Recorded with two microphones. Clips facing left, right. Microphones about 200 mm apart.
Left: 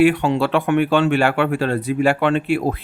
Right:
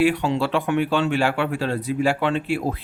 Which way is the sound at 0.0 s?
60° left (ahead or behind).